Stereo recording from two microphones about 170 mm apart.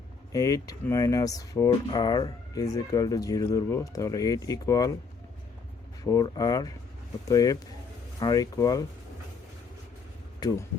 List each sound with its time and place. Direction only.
0.3 s speech: 20° left (ahead or behind)
6.1 s speech: 20° left (ahead or behind)
10.4 s speech: 20° left (ahead or behind)